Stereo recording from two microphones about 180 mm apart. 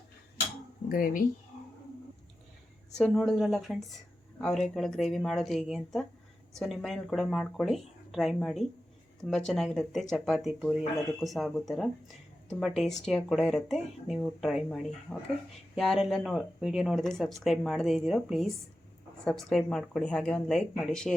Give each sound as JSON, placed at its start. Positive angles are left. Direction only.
{"t": 0.9, "sound": "speech", "side_deg": 50}
{"t": 3.0, "sound": "speech", "side_deg": 0}
{"t": 15.1, "sound": "speech", "side_deg": 15}
{"t": 15.7, "sound": "speech", "side_deg": 0}